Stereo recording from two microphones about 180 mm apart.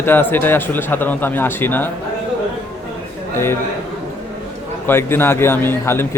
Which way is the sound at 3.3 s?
15° left (ahead or behind).